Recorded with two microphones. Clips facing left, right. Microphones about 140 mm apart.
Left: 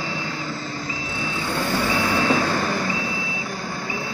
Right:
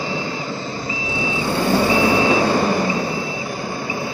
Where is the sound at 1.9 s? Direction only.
15° right (ahead or behind).